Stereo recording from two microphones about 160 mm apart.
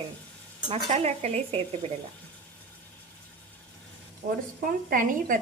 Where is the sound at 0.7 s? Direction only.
45° right (ahead or behind).